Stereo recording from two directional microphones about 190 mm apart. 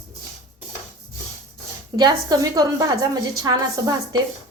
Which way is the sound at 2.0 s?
20° right (ahead or behind).